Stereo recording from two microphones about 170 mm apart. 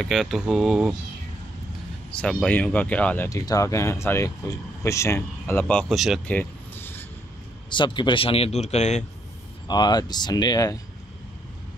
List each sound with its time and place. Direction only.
0.0 s speech: centre (ahead or behind)
2.0 s speech: 5° left (ahead or behind)
3.3 s speech: 20° left (ahead or behind); by 6.3 s centre (ahead or behind)
6.3 s vehicle: 10° left (ahead or behind)
7.7 s speech: 30° left (ahead or behind)
9.7 s speech: 25° left (ahead or behind)